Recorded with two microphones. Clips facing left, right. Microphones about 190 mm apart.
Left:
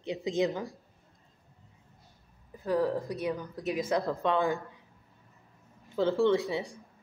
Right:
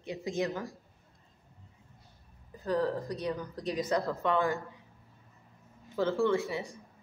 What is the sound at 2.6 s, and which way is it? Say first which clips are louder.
A woman's voice: left 2 dB; 10° left (ahead or behind).